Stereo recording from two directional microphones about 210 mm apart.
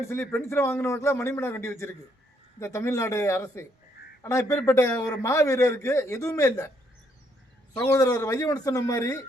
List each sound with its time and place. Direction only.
0.0 s a man's voice: 10° left (ahead or behind)
7.8 s a man's voice: 15° left (ahead or behind)